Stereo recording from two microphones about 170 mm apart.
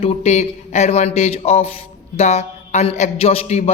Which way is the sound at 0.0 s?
40° left (ahead or behind).